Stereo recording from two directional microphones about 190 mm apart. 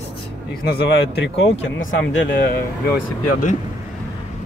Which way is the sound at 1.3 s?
80° left.